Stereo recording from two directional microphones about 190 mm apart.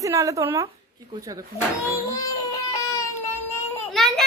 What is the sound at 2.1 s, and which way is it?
Baby cry, 15° left (ahead or behind).